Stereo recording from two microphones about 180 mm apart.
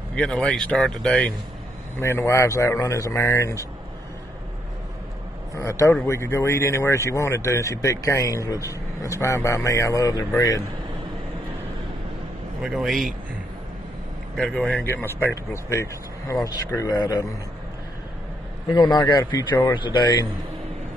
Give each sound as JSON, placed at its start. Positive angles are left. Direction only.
{"t": 0.1, "sound": "speech", "side_deg": 5}
{"t": 5.5, "sound": "speech", "side_deg": 15}
{"t": 12.6, "sound": "speech", "side_deg": 0}
{"t": 14.3, "sound": "speech", "side_deg": 5}
{"t": 18.8, "sound": "speech", "side_deg": 25}